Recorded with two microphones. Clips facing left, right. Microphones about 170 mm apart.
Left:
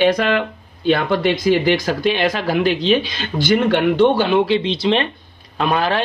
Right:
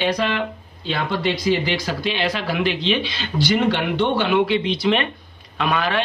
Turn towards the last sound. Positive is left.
turn(degrees=35)  # may be behind; listen again after turning